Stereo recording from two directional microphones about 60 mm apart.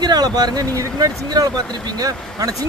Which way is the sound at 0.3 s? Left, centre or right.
Right.